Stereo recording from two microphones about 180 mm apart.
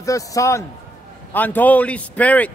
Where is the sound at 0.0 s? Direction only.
20° left (ahead or behind).